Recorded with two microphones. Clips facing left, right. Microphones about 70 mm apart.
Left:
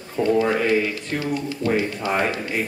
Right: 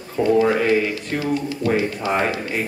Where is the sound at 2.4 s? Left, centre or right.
Centre.